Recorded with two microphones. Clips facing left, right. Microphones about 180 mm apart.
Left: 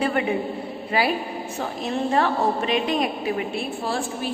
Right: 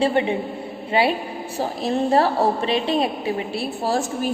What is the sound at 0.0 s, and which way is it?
A man's voice, 30° right (ahead or behind).